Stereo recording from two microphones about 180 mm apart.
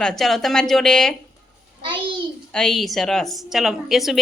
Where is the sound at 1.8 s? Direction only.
25° right (ahead or behind).